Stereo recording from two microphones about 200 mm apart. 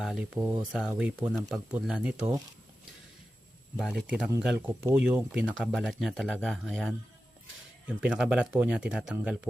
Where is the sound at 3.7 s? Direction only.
Centre (ahead or behind).